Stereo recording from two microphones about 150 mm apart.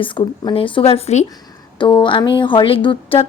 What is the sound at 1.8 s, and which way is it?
Speech, 30° left (ahead or behind).